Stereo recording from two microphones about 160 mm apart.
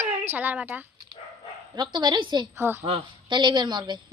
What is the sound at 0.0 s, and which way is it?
Speech, 10° right (ahead or behind).